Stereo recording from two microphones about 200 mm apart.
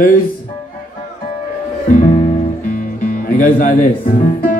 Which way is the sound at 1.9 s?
40° left (ahead or behind).